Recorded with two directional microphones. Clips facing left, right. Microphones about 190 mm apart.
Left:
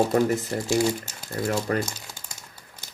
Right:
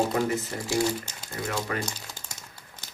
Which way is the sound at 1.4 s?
35° left (ahead or behind).